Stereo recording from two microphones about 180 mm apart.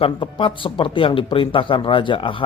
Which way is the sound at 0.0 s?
30° left (ahead or behind).